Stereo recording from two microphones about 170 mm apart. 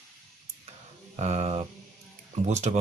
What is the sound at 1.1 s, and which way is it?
Speech, 40° right (ahead or behind).